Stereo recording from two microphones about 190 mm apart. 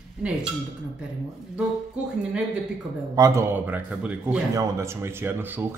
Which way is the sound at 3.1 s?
15° right (ahead or behind).